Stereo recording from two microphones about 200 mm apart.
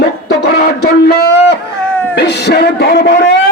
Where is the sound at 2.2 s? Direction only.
55° left (ahead or behind).